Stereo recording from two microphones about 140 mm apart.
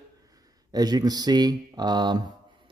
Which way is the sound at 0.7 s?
30° right (ahead or behind).